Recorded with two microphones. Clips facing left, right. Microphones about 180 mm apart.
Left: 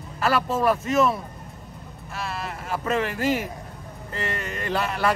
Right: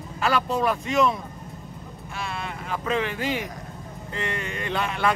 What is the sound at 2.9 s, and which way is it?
Speech, 40° left (ahead or behind).